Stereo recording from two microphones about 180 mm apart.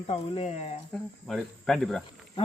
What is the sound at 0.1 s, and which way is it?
Speech, 30° left (ahead or behind).